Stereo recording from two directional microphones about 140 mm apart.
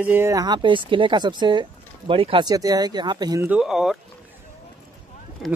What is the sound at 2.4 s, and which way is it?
Speech, 25° right (ahead or behind).